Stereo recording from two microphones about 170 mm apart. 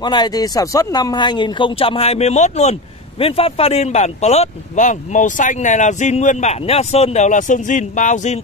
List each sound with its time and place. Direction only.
0.0 s speech: 25° left (ahead or behind); by 8.4 s 45° left (ahead or behind)